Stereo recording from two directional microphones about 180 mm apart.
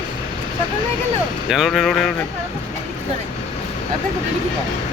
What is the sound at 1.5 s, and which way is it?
Speech, centre (ahead or behind).